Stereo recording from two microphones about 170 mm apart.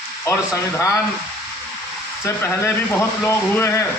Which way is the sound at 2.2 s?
15° left (ahead or behind).